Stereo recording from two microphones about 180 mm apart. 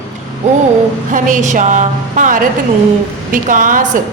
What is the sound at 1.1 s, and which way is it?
A woman's voice, 45° right (ahead or behind).